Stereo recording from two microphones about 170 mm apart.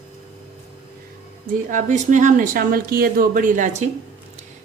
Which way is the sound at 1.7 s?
45° right (ahead or behind).